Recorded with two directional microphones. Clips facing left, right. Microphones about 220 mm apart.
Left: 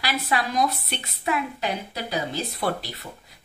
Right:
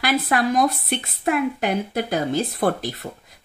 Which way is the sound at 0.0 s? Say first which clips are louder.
Right 6 dB; 50° right (ahead or behind).